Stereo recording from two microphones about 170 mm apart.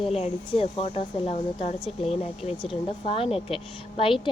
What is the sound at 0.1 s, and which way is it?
A woman's voice, 35° left (ahead or behind).